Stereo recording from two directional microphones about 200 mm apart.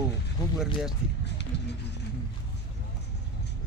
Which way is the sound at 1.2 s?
60° left (ahead or behind).